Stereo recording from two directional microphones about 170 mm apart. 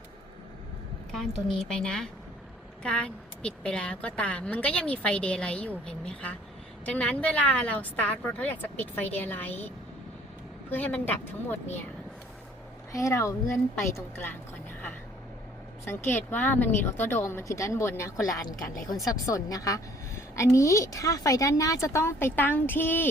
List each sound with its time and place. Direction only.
1.5 s a woman's voice: 5° left (ahead or behind)
12.9 s a woman's voice: 20° left (ahead or behind)
15.8 s a woman's voice: 15° left (ahead or behind)